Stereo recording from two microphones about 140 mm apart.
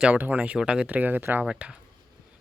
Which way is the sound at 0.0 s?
10° right (ahead or behind).